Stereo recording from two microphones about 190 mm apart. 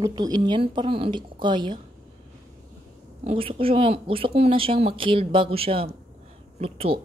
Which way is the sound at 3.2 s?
30° right (ahead or behind).